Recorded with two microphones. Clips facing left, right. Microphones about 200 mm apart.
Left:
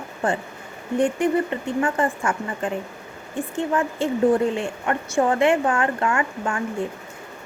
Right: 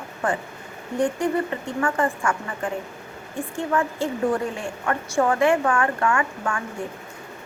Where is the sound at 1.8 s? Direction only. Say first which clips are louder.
Even; 20° left (ahead or behind).